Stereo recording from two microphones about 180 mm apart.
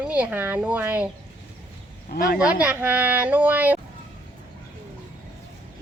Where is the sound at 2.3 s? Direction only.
5° right (ahead or behind).